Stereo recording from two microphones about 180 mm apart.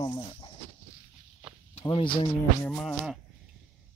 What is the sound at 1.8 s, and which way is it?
Speech, 30° left (ahead or behind).